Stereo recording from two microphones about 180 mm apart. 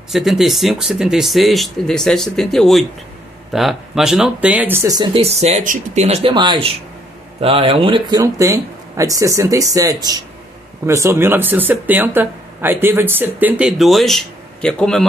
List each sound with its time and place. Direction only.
0.1 s speech: centre (ahead or behind)